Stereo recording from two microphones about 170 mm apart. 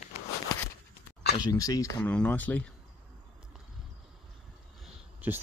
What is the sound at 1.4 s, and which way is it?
Speech, 20° left (ahead or behind).